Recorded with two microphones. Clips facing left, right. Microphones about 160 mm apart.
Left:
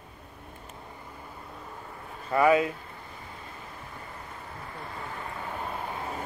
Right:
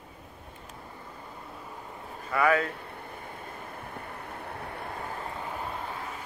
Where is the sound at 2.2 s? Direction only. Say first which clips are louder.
Left 3 dB; 25° left (ahead or behind).